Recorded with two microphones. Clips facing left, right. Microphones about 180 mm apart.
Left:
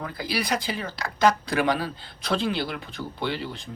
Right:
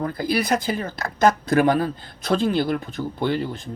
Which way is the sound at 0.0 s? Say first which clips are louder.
Right 6 dB; 50° right (ahead or behind).